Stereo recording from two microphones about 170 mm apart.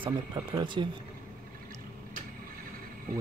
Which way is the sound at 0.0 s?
30° right (ahead or behind).